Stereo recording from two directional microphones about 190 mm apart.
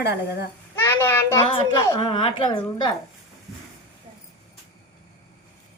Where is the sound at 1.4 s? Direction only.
25° left (ahead or behind).